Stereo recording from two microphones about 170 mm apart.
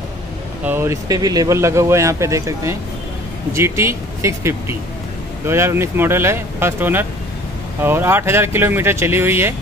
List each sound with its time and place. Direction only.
0.7 s speech: 15° right (ahead or behind)